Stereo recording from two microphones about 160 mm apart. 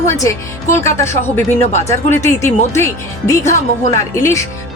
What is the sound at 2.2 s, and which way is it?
Speech, 15° left (ahead or behind).